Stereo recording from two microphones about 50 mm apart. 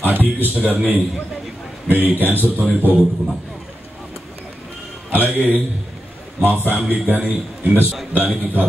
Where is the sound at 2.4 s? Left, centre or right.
Right.